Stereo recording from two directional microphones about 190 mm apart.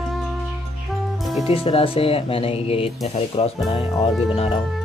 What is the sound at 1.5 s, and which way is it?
Speech, 30° left (ahead or behind).